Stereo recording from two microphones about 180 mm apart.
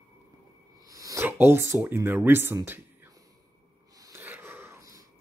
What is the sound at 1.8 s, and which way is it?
Speech, 10° right (ahead or behind).